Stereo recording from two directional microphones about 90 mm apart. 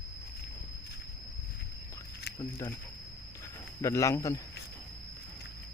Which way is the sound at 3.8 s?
35° left (ahead or behind).